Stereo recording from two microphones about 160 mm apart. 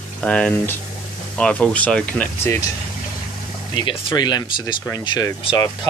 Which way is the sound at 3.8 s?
30° left (ahead or behind).